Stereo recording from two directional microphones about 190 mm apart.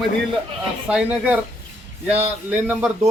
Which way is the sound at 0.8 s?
5° right (ahead or behind).